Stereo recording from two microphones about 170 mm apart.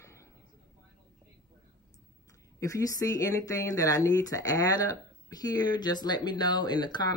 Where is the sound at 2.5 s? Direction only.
20° left (ahead or behind).